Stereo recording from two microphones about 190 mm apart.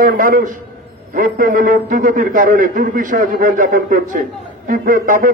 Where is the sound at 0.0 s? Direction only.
45° right (ahead or behind).